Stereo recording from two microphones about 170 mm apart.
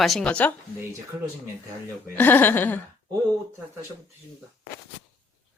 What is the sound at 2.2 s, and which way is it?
Speech, 10° left (ahead or behind).